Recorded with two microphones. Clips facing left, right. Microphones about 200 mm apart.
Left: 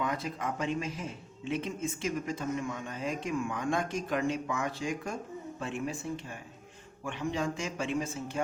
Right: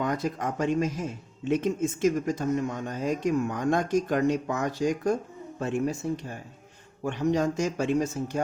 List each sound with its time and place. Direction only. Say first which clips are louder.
0.0 s speech: right 5 dB; 45° right (ahead or behind)